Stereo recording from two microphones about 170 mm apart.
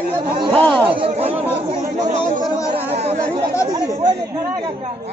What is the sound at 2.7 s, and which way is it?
Chatter, 35° right (ahead or behind).